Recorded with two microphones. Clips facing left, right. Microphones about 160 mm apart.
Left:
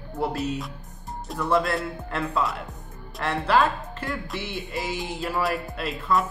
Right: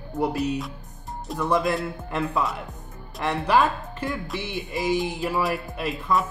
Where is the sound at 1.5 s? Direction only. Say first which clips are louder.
Even; 15° right (ahead or behind).